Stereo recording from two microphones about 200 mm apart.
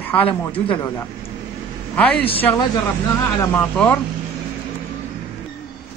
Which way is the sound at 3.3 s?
10° left (ahead or behind).